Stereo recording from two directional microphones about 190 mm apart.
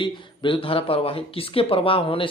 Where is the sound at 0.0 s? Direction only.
25° left (ahead or behind).